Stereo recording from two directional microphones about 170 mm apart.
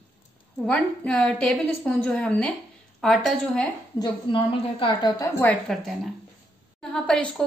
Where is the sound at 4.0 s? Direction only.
30° left (ahead or behind).